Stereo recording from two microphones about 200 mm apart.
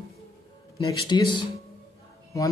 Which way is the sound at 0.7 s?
20° left (ahead or behind).